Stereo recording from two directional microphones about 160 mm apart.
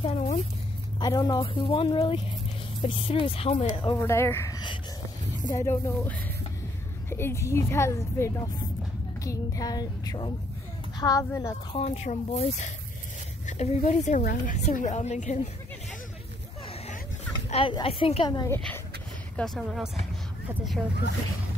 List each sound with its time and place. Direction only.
0.0 s a sound: 40° left (ahead or behind)
0.9 s speech: 25° left (ahead or behind)
1.4 s a woman's voice: 35° left (ahead or behind)
3.8 s a woman's voice: 20° left (ahead or behind)
11.7 s a woman's voice: 40° left (ahead or behind)
13.5 s a woman's voice: 45° left (ahead or behind)
17.5 s a woman's voice: 35° left (ahead or behind)
18.5 s a woman's voice: 10° left (ahead or behind)
19.3 s speech: centre (ahead or behind)